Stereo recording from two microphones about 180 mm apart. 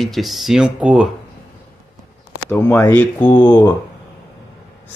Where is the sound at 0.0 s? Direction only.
Centre (ahead or behind).